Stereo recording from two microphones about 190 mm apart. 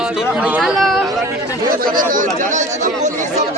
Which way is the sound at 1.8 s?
45° right (ahead or behind).